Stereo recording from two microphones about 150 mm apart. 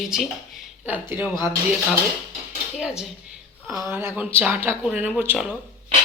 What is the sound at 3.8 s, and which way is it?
Speech, 15° right (ahead or behind).